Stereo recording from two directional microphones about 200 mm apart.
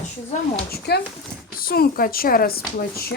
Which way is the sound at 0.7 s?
55° left (ahead or behind).